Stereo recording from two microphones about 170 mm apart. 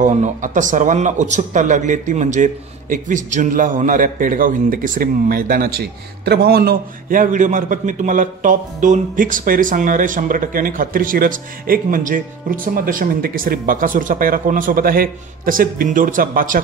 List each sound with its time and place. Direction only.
0.0 s speech: 45° right (ahead or behind)